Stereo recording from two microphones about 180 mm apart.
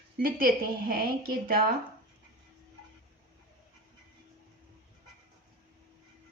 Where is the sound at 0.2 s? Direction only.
55° right (ahead or behind).